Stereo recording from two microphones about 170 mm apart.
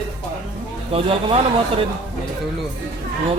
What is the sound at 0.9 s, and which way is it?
Speech, 35° right (ahead or behind).